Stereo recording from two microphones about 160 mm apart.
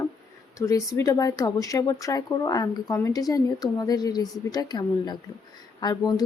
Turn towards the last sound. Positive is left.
turn(degrees=25)  # may be behind; listen again after turning